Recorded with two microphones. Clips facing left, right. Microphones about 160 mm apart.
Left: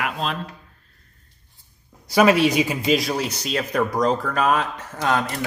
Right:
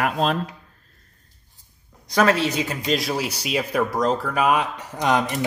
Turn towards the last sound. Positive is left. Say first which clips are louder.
# right 1 dB
turn(degrees=-20)  # may be behind; listen again after turning